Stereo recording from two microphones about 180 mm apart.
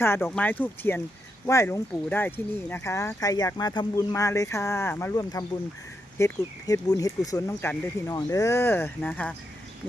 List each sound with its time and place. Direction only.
0.0 s speech: 10° left (ahead or behind)